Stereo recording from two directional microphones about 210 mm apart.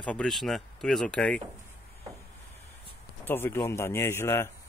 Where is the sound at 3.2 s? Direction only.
10° left (ahead or behind).